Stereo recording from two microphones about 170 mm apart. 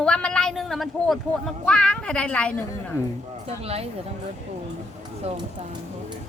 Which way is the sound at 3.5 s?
35° right (ahead or behind).